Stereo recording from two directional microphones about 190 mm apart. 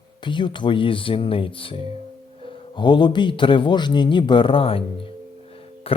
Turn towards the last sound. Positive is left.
turn(degrees=30)  # may be behind; listen again after turning